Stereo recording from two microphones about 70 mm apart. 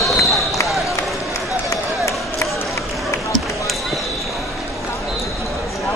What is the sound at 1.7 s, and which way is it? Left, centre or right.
Run, left.